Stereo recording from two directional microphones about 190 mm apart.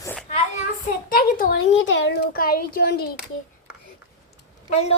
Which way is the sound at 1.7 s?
75° left (ahead or behind).